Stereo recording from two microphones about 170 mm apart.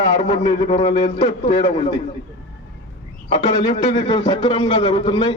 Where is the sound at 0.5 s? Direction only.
45° left (ahead or behind).